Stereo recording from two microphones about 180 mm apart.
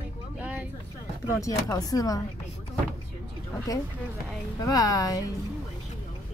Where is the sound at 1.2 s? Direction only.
20° left (ahead or behind).